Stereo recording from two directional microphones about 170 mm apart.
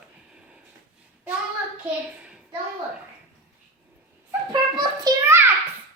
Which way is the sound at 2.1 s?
5° right (ahead or behind).